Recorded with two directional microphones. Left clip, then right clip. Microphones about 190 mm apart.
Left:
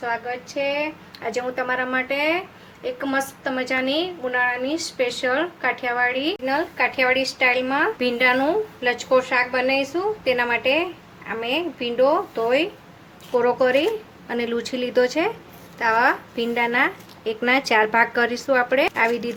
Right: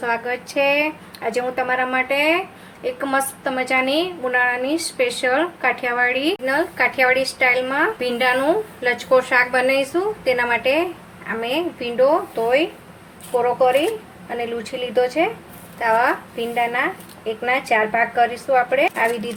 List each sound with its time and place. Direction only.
0.0 s speech: 10° right (ahead or behind)
1.2 s a woman's voice: centre (ahead or behind); by 12.6 s 20° left (ahead or behind)
13.4 s a woman's voice: 30° left (ahead or behind)
17.2 s a woman's voice: 40° left (ahead or behind)